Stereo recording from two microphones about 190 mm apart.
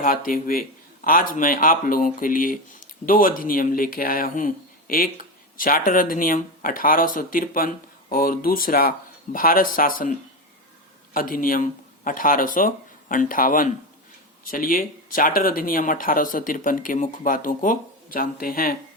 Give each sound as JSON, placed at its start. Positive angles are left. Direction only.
{"t": 0.0, "sound": "speech", "side_deg": 45}
{"t": 11.1, "sound": "speech", "side_deg": 45}